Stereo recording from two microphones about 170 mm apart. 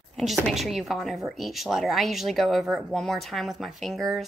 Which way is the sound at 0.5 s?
Centre (ahead or behind).